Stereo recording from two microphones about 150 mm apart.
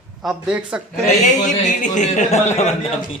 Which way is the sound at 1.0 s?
55° left (ahead or behind).